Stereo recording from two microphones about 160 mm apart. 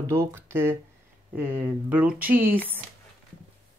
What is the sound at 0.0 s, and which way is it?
Speech, 15° right (ahead or behind).